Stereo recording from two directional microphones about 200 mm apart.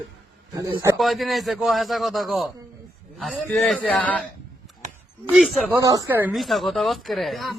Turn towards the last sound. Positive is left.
turn(degrees=0)  # may be behind; listen again after turning